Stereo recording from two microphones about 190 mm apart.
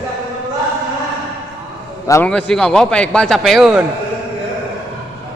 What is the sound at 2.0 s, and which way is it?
Speech, 15° left (ahead or behind).